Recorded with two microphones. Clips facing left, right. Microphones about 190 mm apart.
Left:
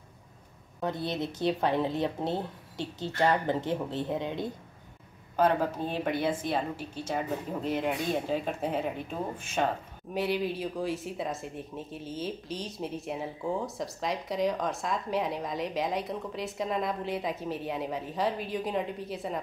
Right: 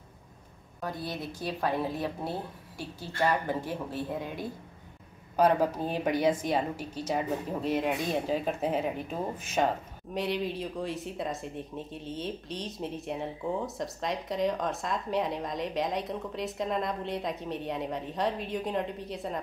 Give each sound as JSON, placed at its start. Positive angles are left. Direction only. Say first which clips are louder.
{"t": 0.7, "sound": "a woman's voice", "louder": "left 4 dB", "side_deg": 20}
{"t": 5.3, "sound": "a woman's voice", "louder": "right 1 dB", "side_deg": -10}